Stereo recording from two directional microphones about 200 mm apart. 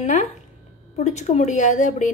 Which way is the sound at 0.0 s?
35° left (ahead or behind).